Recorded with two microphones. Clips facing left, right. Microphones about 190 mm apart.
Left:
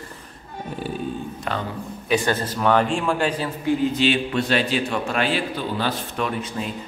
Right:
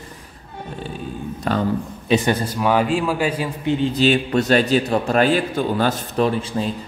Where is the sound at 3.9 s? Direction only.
40° right (ahead or behind).